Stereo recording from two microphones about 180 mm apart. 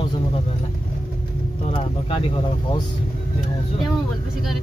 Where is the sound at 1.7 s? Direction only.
30° left (ahead or behind).